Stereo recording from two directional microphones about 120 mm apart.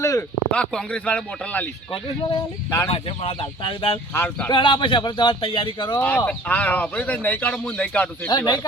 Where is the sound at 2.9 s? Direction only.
50° left (ahead or behind).